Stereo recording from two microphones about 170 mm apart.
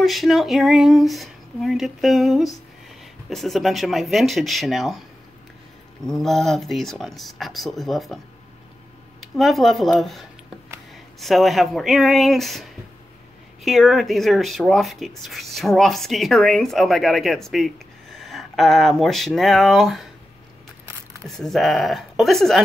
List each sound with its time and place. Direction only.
0.0 s speech: centre (ahead or behind)
6.0 s speech: centre (ahead or behind)
9.2 s speech: centre (ahead or behind)
13.7 s speech: centre (ahead or behind)
21.3 s speech: centre (ahead or behind)